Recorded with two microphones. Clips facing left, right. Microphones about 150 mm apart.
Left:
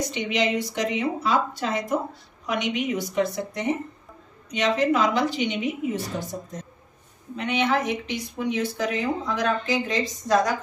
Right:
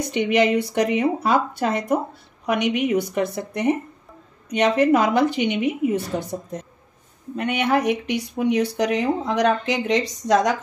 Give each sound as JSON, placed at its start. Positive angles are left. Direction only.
{"t": 0.0, "sound": "speech", "side_deg": -60}
{"t": 7.3, "sound": "speech", "side_deg": -60}